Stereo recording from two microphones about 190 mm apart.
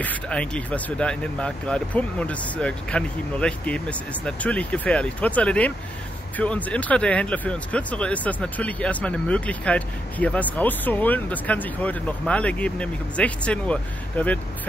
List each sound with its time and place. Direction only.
0.0 s speech: 5° left (ahead or behind)